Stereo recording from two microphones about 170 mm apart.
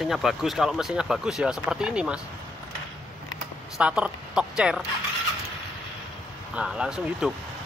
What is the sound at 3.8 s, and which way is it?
Speech, 5° right (ahead or behind).